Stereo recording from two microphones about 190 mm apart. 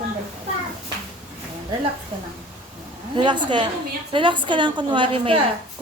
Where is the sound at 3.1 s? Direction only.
25° right (ahead or behind).